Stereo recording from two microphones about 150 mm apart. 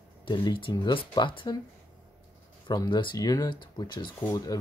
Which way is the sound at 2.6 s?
30° left (ahead or behind).